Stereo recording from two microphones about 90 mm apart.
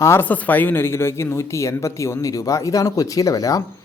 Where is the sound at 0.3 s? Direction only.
20° left (ahead or behind).